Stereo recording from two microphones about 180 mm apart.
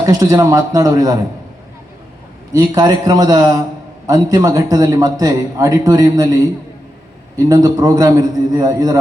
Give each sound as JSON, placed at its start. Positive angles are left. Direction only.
{"t": 0.0, "sound": "a man's voice", "side_deg": -20}
{"t": 2.5, "sound": "a man's voice", "side_deg": -20}
{"t": 7.3, "sound": "a man's voice", "side_deg": -20}